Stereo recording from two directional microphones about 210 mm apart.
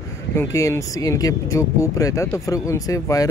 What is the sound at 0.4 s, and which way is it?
Speech, 15° left (ahead or behind).